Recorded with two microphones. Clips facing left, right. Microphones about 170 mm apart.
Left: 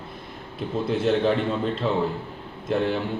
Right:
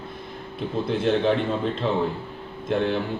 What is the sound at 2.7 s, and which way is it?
Speech, 5° left (ahead or behind).